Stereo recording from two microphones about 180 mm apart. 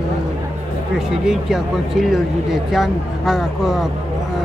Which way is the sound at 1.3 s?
Centre (ahead or behind).